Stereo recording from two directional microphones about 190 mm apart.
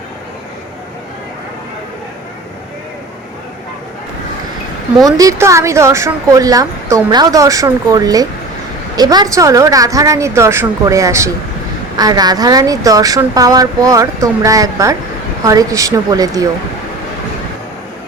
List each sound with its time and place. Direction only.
5.0 s a woman's voice: 20° right (ahead or behind)